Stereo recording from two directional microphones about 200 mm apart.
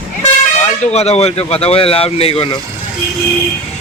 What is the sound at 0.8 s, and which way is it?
Speech, 35° left (ahead or behind).